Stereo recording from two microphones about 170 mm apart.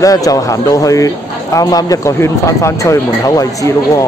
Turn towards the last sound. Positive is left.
turn(degrees=20)  # may be behind; listen again after turning